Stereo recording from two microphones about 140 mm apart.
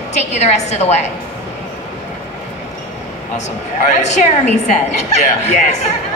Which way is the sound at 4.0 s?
55° left (ahead or behind).